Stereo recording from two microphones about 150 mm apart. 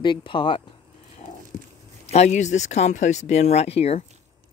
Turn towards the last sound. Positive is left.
turn(degrees=45)  # may be behind; listen again after turning